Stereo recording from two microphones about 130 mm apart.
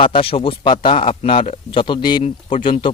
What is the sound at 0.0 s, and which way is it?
A man's voice, 45° left (ahead or behind).